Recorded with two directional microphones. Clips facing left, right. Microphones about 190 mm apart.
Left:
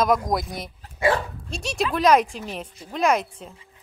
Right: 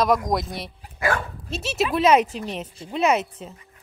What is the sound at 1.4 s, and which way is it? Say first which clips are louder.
Speech: right 2 dB; 5° right (ahead or behind).